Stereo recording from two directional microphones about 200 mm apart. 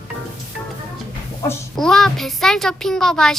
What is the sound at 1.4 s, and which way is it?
Speech, 20° left (ahead or behind).